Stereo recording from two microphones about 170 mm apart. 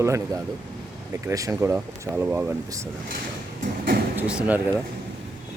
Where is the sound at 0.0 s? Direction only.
15° right (ahead or behind).